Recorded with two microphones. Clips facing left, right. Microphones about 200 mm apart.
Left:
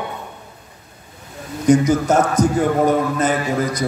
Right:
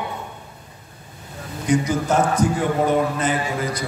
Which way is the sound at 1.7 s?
40° left (ahead or behind).